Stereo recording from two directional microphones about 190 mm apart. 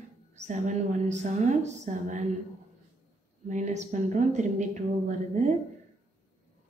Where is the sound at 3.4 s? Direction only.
40° right (ahead or behind).